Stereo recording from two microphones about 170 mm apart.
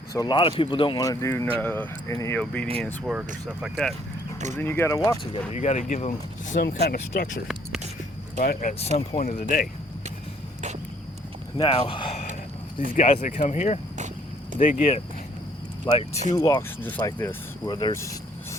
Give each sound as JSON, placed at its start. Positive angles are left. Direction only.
{"t": 0.1, "sound": "speech", "side_deg": 25}
{"t": 1.0, "sound": "speech", "side_deg": 20}
{"t": 2.8, "sound": "speech", "side_deg": -5}
{"t": 4.5, "sound": "speech", "side_deg": 15}
{"t": 5.5, "sound": "speech", "side_deg": 45}
{"t": 6.6, "sound": "speech", "side_deg": 70}
{"t": 8.4, "sound": "speech", "side_deg": 50}
{"t": 11.5, "sound": "speech", "side_deg": 30}
{"t": 13.0, "sound": "speech", "side_deg": 45}
{"t": 16.3, "sound": "speech", "side_deg": 20}